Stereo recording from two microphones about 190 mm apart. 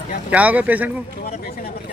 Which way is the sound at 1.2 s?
50° left (ahead or behind).